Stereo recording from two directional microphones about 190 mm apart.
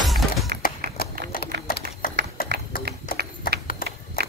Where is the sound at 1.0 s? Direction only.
55° left (ahead or behind).